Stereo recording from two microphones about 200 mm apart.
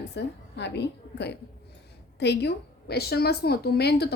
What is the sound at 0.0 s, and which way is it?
A woman's voice, 60° left (ahead or behind).